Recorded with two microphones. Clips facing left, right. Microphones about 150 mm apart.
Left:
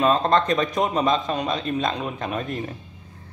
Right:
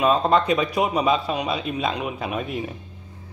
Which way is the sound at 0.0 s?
10° right (ahead or behind).